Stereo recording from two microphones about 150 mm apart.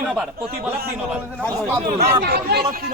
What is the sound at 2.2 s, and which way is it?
Speech, 90° right.